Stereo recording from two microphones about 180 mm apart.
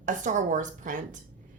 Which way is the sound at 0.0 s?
45° right (ahead or behind).